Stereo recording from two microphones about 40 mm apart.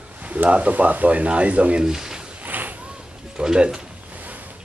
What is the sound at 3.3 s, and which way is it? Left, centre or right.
Speech, right.